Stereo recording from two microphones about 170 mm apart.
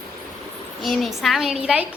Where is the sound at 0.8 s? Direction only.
Centre (ahead or behind).